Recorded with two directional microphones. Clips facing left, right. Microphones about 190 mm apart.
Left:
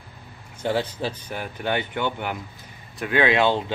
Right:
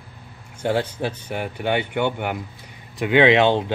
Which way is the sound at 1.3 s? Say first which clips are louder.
Right 5 dB; 15° right (ahead or behind).